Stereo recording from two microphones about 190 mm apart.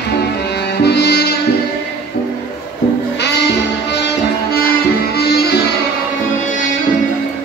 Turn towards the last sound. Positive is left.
turn(degrees=55)  # may be behind; listen again after turning